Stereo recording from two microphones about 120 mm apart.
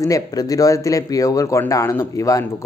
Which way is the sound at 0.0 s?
30° left (ahead or behind).